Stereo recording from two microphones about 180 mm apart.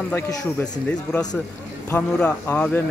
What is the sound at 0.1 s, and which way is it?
Speech, 15° left (ahead or behind).